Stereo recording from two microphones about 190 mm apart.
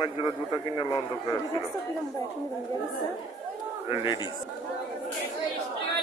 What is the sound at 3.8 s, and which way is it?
Speech, 25° left (ahead or behind).